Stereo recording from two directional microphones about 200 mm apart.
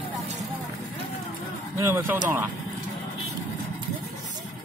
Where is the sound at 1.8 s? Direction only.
15° right (ahead or behind).